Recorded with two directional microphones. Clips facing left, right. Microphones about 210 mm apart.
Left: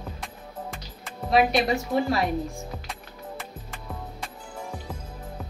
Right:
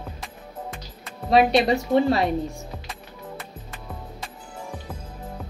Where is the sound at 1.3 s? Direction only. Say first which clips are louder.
Right 4 dB; 30° right (ahead or behind).